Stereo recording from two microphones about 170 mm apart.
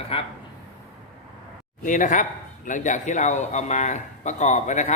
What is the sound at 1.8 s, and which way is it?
A man's voice, 50° left (ahead or behind).